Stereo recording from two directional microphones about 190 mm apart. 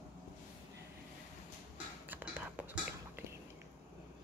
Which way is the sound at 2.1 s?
10° right (ahead or behind).